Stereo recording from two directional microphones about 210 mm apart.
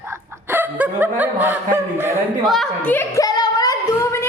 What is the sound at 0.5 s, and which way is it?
Snicker, 10° right (ahead or behind).